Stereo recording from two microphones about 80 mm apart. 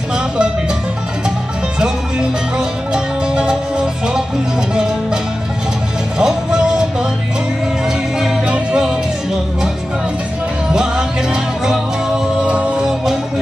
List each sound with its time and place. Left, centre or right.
2.9 s music: centre
8.2 s music: centre
10.7 s music: centre
12.4 s music: centre